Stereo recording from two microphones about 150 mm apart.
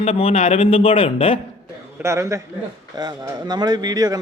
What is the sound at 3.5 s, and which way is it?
Speech, 25° right (ahead or behind).